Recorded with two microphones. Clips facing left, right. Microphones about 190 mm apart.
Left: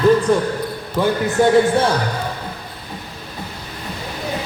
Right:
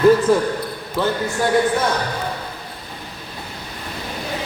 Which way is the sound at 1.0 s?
15° left (ahead or behind).